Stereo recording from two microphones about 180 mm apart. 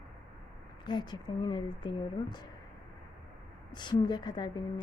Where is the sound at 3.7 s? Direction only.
25° left (ahead or behind).